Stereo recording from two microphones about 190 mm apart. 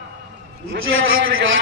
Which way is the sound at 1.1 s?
90° right.